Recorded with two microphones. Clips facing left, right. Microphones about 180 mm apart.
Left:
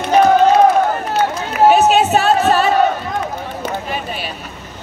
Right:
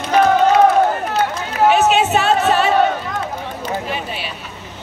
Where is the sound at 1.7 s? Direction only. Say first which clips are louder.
Left 2 dB; 40° left (ahead or behind).